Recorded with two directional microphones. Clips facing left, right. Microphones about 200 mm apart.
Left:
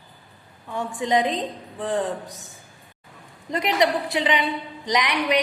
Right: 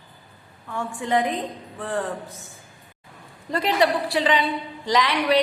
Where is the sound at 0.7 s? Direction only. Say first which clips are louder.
Left 1 dB; 20° left (ahead or behind).